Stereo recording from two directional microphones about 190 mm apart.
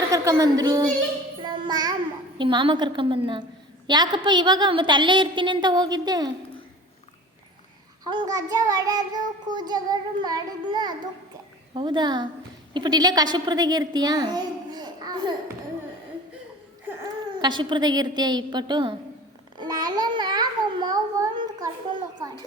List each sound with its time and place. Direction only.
0.1 s a woman's voice: 20° right (ahead or behind)
1.4 s child singing: 25° right (ahead or behind)
8.0 s child singing: 20° right (ahead or behind)
17.4 s child singing: 25° right (ahead or behind)
19.5 s babbling: 20° right (ahead or behind)